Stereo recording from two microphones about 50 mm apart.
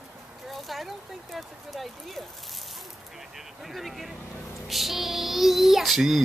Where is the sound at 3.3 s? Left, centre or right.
Centre.